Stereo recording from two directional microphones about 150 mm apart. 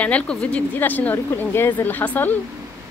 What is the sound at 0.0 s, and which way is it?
Speech, 10° left (ahead or behind).